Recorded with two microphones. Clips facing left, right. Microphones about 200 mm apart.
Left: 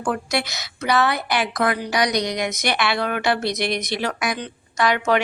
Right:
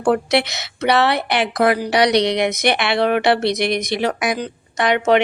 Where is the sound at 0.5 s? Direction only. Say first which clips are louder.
Right 4 dB; 25° right (ahead or behind).